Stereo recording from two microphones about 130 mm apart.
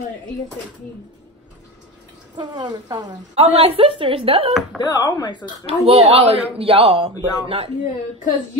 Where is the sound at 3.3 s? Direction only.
50° right (ahead or behind).